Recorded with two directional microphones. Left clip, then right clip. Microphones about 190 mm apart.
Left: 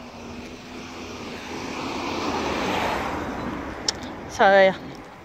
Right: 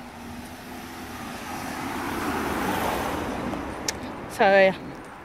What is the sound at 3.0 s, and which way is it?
Vehicle, 10° left (ahead or behind).